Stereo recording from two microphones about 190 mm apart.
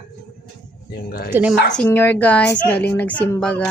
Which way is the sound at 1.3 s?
10° right (ahead or behind).